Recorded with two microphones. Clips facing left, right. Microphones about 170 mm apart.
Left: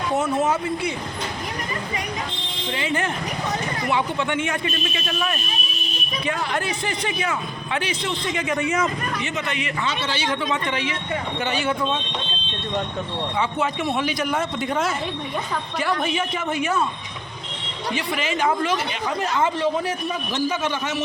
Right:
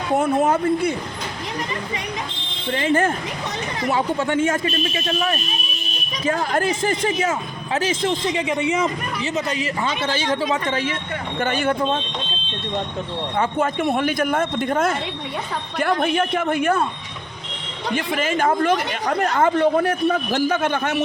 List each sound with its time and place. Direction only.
0.2 s a man's voice: 55° right (ahead or behind)
2.7 s a man's voice: 50° right (ahead or behind)
6.2 s a man's voice: 45° right (ahead or behind)
8.4 s speech: 25° right (ahead or behind)
9.2 s a man's voice: 40° right (ahead or behind)
13.3 s a man's voice: 50° right (ahead or behind)
17.9 s speech: 50° right (ahead or behind)